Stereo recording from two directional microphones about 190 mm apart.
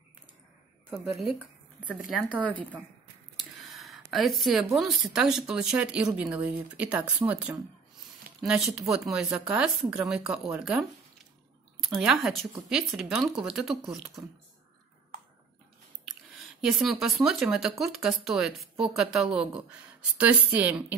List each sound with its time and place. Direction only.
0.8 s speech: 5° right (ahead or behind)
3.6 s a sound: centre (ahead or behind)
4.7 s speech: centre (ahead or behind)
16.1 s speech: centre (ahead or behind)